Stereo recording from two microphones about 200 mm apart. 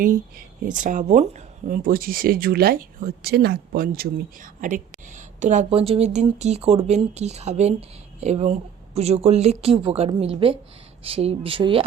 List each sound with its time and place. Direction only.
0.8 s speech: 40° right (ahead or behind)